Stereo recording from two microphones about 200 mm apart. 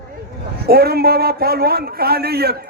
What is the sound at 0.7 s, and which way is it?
A man's voice, 50° right (ahead or behind).